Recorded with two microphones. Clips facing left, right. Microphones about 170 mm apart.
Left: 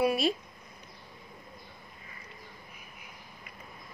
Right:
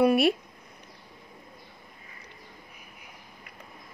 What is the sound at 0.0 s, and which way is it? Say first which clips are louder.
Speech: right 6 dB; 60° right (ahead or behind).